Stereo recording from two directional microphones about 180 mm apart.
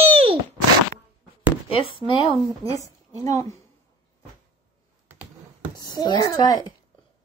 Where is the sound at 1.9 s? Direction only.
30° left (ahead or behind).